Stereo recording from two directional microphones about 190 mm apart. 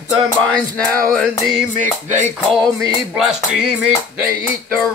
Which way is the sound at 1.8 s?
40° right (ahead or behind).